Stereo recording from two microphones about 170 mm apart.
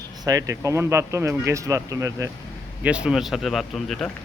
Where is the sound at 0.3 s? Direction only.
20° right (ahead or behind).